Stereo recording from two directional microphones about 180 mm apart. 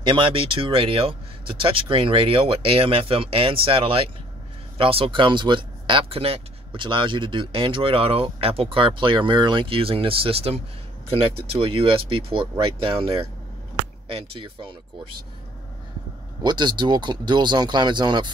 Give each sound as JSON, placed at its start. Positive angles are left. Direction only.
{"t": 0.0, "sound": "speech", "side_deg": -30}
{"t": 16.4, "sound": "speech", "side_deg": -25}